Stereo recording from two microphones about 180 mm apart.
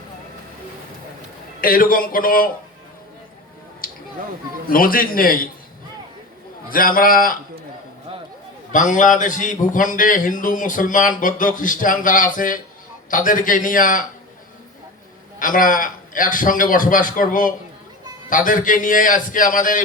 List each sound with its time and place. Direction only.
1.6 s a man's voice: 50° left (ahead or behind)
3.8 s a sound: 50° left (ahead or behind)
4.7 s a man's voice: 50° left (ahead or behind)
6.7 s a man's voice: 50° left (ahead or behind)
8.7 s a man's voice: 45° left (ahead or behind)
15.4 s a man's voice: 50° left (ahead or behind)